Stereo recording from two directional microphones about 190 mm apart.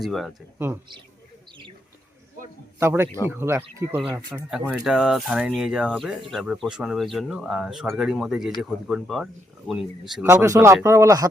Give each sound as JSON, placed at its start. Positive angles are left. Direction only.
{"t": 0.0, "sound": "speech", "side_deg": 0}
{"t": 2.7, "sound": "speech", "side_deg": -10}
{"t": 10.2, "sound": "speech", "side_deg": -15}